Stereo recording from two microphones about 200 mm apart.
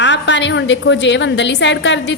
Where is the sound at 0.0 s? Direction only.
65° left (ahead or behind).